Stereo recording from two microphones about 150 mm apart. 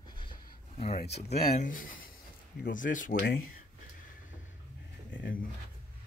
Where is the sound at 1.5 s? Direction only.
65° left (ahead or behind).